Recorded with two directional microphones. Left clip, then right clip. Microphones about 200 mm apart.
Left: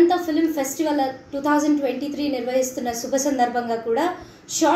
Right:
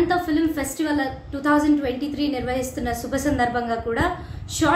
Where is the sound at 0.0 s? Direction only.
15° right (ahead or behind).